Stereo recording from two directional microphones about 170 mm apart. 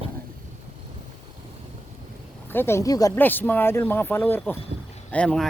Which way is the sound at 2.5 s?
15° left (ahead or behind).